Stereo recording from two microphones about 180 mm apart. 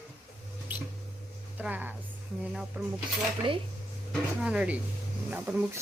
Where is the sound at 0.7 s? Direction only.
10° right (ahead or behind).